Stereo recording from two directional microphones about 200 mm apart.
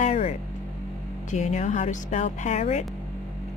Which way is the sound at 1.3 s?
35° left (ahead or behind).